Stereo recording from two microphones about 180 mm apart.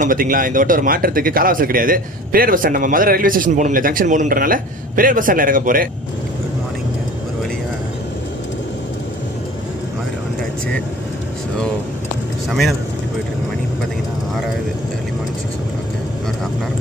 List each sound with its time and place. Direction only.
0.0 s a man's voice: 50° right (ahead or behind)
12.4 s speech: centre (ahead or behind)